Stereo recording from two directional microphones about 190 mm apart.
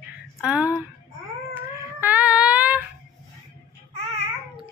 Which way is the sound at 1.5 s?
10° right (ahead or behind).